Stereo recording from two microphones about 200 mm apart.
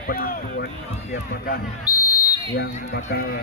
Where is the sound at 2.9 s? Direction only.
70° left (ahead or behind).